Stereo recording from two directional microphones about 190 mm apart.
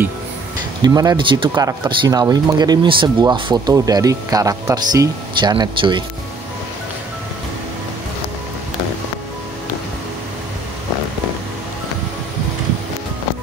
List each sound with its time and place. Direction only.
0.8 s speech: 20° right (ahead or behind)